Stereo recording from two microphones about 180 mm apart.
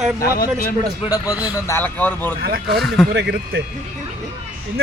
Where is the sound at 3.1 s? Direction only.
70° right (ahead or behind).